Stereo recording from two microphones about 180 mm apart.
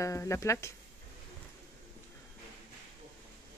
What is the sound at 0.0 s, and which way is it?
Speech, 15° left (ahead or behind).